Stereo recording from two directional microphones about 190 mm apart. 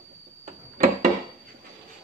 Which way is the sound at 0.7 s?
45° right (ahead or behind).